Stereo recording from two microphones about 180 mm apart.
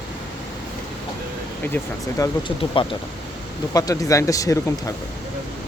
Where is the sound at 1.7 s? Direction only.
20° left (ahead or behind).